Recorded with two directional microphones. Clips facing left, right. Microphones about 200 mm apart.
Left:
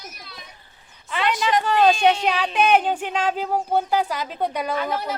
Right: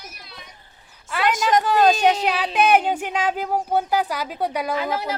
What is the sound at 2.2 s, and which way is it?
Speech, 5° right (ahead or behind).